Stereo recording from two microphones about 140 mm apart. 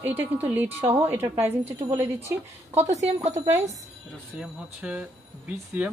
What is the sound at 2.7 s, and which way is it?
Speech, 55° right (ahead or behind).